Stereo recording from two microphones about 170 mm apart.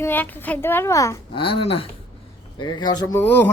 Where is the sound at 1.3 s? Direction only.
30° left (ahead or behind); by 3.4 s 10° left (ahead or behind).